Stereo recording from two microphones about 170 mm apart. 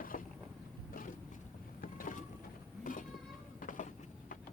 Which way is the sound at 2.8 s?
50° left (ahead or behind).